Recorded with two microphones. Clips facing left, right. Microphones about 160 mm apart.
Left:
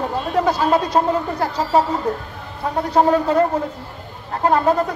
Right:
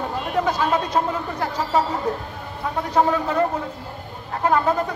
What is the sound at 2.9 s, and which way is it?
Speech, 35° left (ahead or behind).